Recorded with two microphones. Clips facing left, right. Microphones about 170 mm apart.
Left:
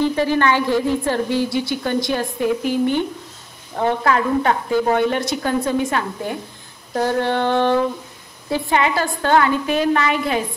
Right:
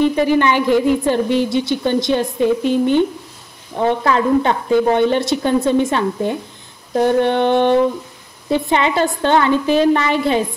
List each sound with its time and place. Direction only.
0.0 s a woman's voice: 15° right (ahead or behind)
4.0 s a woman's voice: 25° right (ahead or behind)